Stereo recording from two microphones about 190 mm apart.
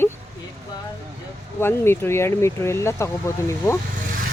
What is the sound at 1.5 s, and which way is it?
Speech, 10° left (ahead or behind).